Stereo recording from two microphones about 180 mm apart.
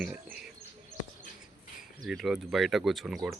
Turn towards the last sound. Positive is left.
turn(degrees=0)  # may be behind; listen again after turning